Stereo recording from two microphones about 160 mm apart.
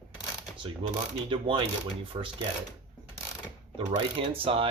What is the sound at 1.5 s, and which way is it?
Speech, 35° right (ahead or behind).